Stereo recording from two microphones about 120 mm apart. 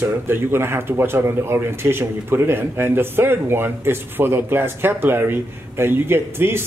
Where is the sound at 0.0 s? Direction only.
20° right (ahead or behind).